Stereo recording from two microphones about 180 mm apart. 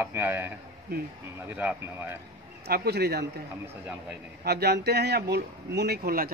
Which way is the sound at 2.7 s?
60° right (ahead or behind).